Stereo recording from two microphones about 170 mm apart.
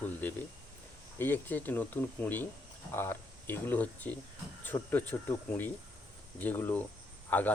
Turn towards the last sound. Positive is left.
turn(degrees=10)  # may be behind; listen again after turning